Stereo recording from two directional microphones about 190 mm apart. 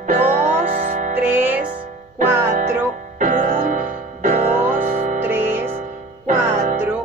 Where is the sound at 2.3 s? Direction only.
15° right (ahead or behind).